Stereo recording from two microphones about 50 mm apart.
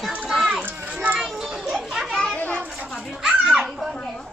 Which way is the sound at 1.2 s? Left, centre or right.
Centre.